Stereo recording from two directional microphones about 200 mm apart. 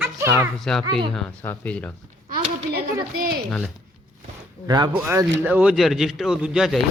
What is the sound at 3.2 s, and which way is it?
Speech, 50° right (ahead or behind).